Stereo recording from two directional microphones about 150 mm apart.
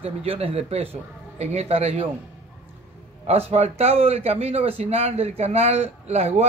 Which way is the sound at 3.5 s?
45° right (ahead or behind).